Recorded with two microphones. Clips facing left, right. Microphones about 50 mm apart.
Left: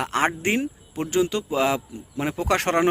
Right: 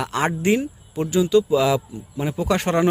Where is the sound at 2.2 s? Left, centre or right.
Left.